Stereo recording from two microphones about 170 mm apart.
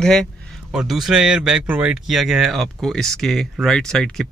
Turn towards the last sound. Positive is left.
turn(degrees=5)  # may be behind; listen again after turning